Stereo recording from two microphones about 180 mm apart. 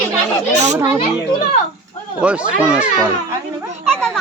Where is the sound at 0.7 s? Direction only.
15° right (ahead or behind).